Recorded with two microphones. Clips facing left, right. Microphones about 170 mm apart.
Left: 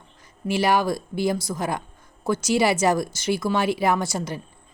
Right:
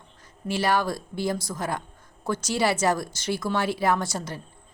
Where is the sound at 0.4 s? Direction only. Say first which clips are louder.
Left 3 dB; 10° left (ahead or behind).